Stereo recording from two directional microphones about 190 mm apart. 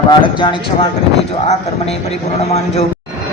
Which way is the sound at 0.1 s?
25° left (ahead or behind).